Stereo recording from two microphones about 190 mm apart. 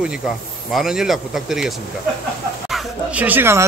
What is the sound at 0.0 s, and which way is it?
A man's voice, 5° right (ahead or behind).